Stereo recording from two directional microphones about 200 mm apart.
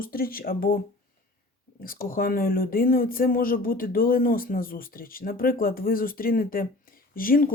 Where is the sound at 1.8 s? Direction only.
45° left (ahead or behind).